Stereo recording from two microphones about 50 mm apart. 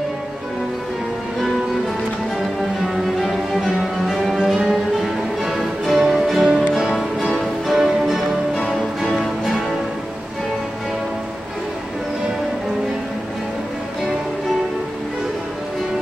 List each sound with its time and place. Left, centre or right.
3.2 s cello: centre
4.1 s music: centre
6.4 s music: centre
6.9 s music: centre
8.6 s music: centre